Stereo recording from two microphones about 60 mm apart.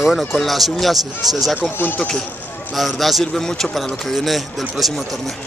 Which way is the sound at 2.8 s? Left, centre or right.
Centre.